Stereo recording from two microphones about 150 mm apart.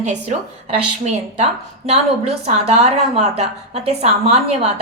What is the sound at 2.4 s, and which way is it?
A woman's voice, 45° right (ahead or behind).